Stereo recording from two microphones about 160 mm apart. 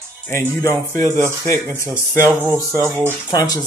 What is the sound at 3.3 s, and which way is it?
Speech, 25° left (ahead or behind).